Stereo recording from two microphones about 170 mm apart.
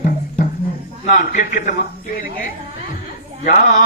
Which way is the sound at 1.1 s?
50° left (ahead or behind).